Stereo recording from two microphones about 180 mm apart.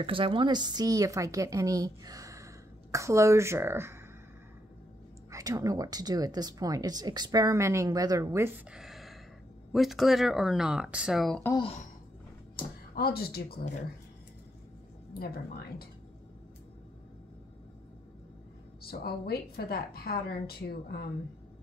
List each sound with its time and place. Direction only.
0.0 s a woman's voice: 30° right (ahead or behind); by 4.0 s 15° right (ahead or behind)
5.3 s speech: 20° right (ahead or behind); by 11.4 s centre (ahead or behind)
12.5 s speech: 60° left (ahead or behind)
15.1 s a woman's voice: 60° left (ahead or behind)
18.8 s a woman's voice: 60° left (ahead or behind)